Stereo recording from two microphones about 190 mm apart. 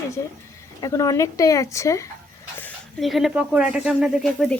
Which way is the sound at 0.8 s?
20° left (ahead or behind).